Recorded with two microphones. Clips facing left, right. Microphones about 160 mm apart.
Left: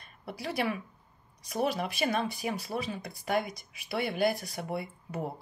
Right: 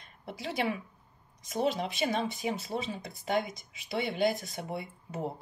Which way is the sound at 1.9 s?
20° right (ahead or behind).